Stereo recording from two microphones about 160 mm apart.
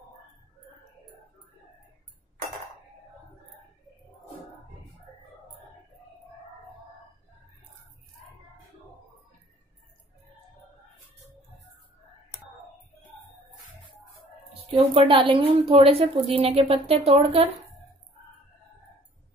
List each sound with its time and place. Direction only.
14.8 s speech: 35° right (ahead or behind)